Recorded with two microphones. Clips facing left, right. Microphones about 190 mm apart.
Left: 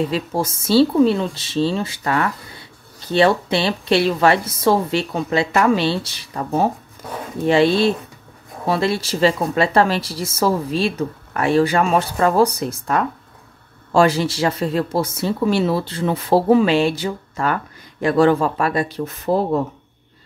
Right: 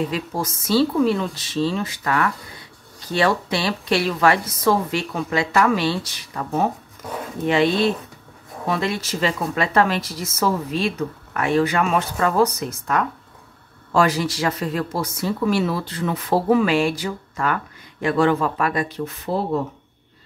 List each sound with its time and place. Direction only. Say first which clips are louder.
0.1 s a woman's voice: left 4 dB; 30° left (ahead or behind); by 19.6 s 45° left (ahead or behind)